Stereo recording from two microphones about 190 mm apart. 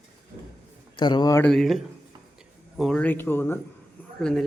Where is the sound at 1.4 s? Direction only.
Centre (ahead or behind).